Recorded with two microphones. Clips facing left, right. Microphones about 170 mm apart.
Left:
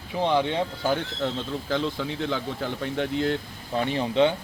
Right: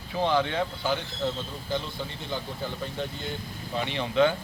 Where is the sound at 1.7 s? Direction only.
90° left.